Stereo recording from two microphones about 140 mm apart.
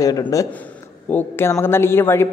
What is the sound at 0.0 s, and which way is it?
A man's voice, 25° left (ahead or behind).